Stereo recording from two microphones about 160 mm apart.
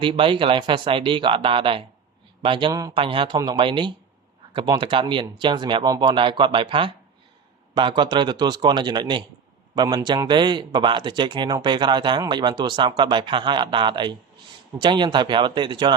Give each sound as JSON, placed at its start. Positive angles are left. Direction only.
{"t": 0.0, "sound": "speech", "side_deg": -30}